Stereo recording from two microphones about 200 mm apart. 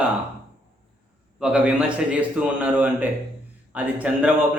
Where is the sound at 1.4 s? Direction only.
5° right (ahead or behind).